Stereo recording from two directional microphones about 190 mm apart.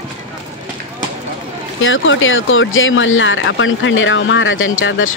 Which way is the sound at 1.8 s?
90° left.